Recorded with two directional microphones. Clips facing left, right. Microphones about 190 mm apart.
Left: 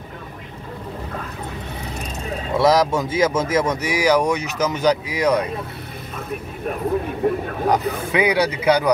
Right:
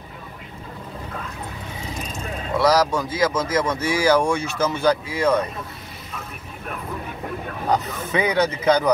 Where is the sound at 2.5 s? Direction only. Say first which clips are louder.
Left 2 dB; 20° left (ahead or behind).